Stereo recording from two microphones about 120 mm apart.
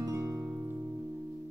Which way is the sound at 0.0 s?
30° right (ahead or behind).